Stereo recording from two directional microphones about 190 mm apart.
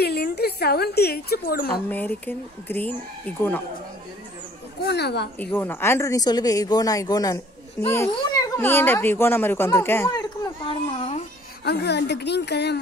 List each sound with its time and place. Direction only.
0.0 s a woman's voice: 55° left (ahead or behind)
1.9 s speech: 10° left (ahead or behind)
4.8 s speech: 60° left (ahead or behind)
5.4 s speech: 10° left (ahead or behind)
10.9 s a child's voice: 35° left (ahead or behind)
11.6 s speech: 60° left (ahead or behind)